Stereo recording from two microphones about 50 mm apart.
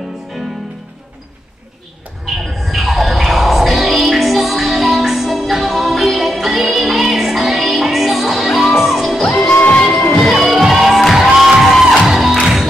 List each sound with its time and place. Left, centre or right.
2.2 s music: centre
9.5 s music: left
10.4 s music: centre